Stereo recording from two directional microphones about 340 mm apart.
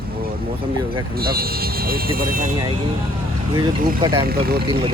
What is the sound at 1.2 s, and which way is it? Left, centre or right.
Speech, right.